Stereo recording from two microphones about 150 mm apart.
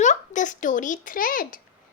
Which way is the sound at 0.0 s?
55° left (ahead or behind).